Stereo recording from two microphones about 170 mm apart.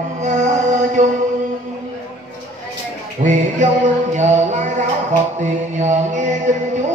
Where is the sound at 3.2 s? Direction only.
45° right (ahead or behind).